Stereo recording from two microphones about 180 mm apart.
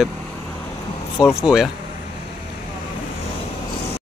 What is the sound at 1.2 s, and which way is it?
Speech, 5° right (ahead or behind).